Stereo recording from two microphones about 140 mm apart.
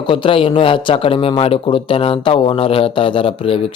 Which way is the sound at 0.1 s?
35° left (ahead or behind).